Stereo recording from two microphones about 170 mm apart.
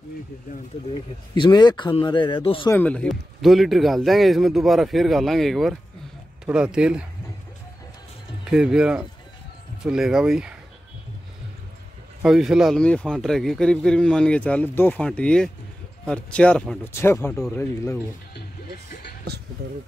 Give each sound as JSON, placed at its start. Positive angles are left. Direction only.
{"t": 1.3, "sound": "a man's voice", "side_deg": 25}
{"t": 2.7, "sound": "a man's voice", "side_deg": 10}
{"t": 8.5, "sound": "a man's voice", "side_deg": -5}
{"t": 12.2, "sound": "a man's voice", "side_deg": 0}
{"t": 19.3, "sound": "speech", "side_deg": -70}